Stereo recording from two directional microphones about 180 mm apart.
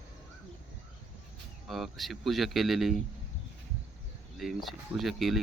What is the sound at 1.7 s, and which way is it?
Speech, centre (ahead or behind).